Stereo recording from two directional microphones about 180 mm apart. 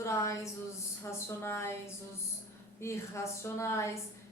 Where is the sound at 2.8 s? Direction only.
15° left (ahead or behind).